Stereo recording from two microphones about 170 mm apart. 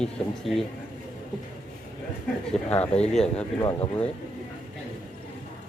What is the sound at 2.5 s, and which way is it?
Speech, 10° left (ahead or behind).